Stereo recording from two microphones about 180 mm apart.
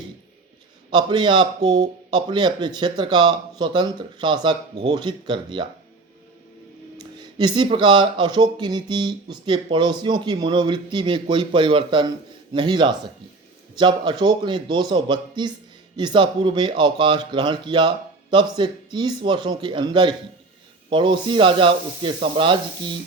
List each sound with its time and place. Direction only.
0.9 s speech: 25° right (ahead or behind)
6.9 s speech: 25° right (ahead or behind)